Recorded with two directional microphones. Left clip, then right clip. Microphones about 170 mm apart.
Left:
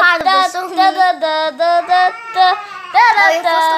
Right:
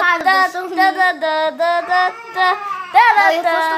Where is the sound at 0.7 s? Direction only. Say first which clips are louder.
Left 3 dB; 5° left (ahead or behind).